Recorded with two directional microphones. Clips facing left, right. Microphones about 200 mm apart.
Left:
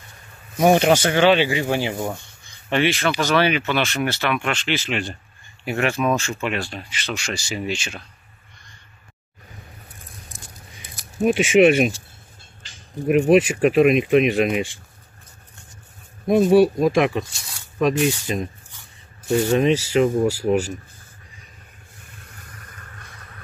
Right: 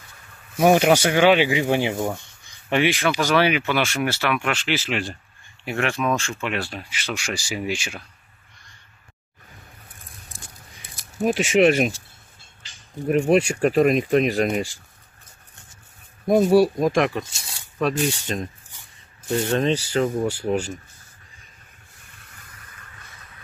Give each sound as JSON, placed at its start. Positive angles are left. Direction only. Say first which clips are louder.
{"t": 0.6, "sound": "speech", "louder": "even", "side_deg": -5}
{"t": 11.3, "sound": "speech", "louder": "left 3 dB", "side_deg": 0}
{"t": 13.3, "sound": "speech", "louder": "left 3 dB", "side_deg": 5}
{"t": 16.3, "sound": "speech", "louder": "left 2 dB", "side_deg": 0}
{"t": 17.2, "sound": "speech", "louder": "left 3 dB", "side_deg": -25}
{"t": 17.7, "sound": "speech", "louder": "left 3 dB", "side_deg": 5}
{"t": 19.5, "sound": "speech", "louder": "left 3 dB", "side_deg": 10}
{"t": 22.7, "sound": "a sound", "louder": "left 4 dB", "side_deg": 45}